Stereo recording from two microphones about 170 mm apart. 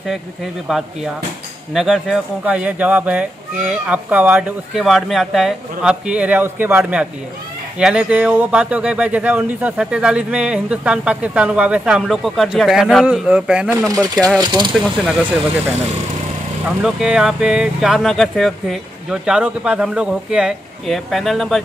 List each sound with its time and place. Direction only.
0.7 s speech: centre (ahead or behind)
14.1 s speech: 5° left (ahead or behind)
14.4 s speech: 25° right (ahead or behind)
14.7 s speech: centre (ahead or behind)
16.8 s speech: 5° right (ahead or behind)